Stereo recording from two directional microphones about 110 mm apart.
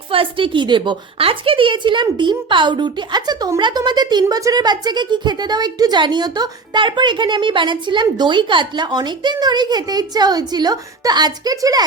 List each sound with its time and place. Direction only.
0.1 s a woman's voice: 55° right (ahead or behind); by 11.9 s 35° right (ahead or behind)